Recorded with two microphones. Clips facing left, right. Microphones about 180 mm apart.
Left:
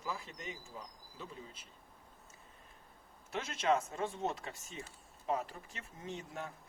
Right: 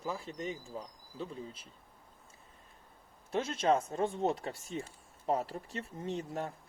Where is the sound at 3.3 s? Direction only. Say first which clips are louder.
Right 4 dB; 30° right (ahead or behind).